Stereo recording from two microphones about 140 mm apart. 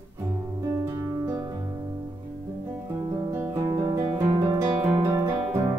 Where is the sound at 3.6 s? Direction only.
30° right (ahead or behind).